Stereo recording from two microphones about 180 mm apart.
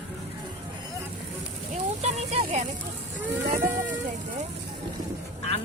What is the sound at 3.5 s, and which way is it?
Speech, 10° right (ahead or behind).